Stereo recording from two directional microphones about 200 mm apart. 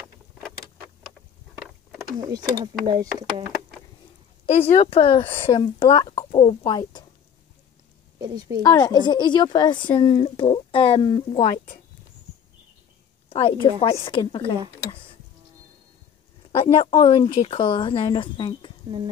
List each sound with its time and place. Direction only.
2.1 s speech: 15° right (ahead or behind)
4.5 s speech: 30° left (ahead or behind)
8.2 s speech: 20° right (ahead or behind)
8.6 s speech: 15° left (ahead or behind)
13.3 s speech: 25° left (ahead or behind)
16.4 s speech: 25° left (ahead or behind)